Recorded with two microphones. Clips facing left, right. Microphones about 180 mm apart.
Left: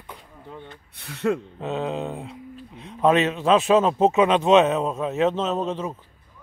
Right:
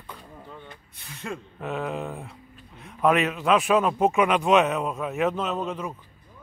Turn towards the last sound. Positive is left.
turn(degrees=25)  # may be behind; listen again after turning